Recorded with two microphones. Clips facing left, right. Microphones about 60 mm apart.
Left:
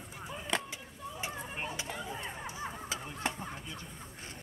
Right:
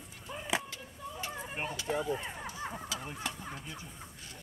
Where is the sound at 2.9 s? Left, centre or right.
Left.